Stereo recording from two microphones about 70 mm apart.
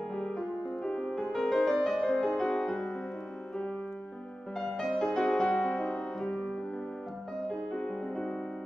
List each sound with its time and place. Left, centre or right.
0.1 s music: centre
4.6 s music: centre